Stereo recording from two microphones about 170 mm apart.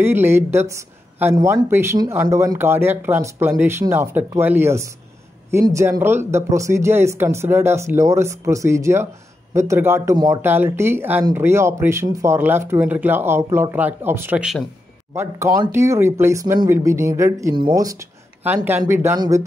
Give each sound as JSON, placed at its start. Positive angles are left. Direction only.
{"t": 0.0, "sound": "speech", "side_deg": -15}
{"t": 19.1, "sound": "speech", "side_deg": -25}